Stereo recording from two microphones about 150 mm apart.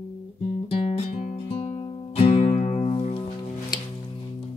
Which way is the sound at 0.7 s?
40° left (ahead or behind).